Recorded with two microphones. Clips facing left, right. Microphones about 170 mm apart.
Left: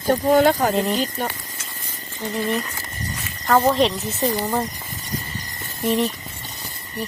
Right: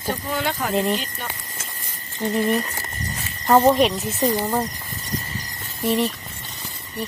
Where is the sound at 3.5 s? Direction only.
15° right (ahead or behind).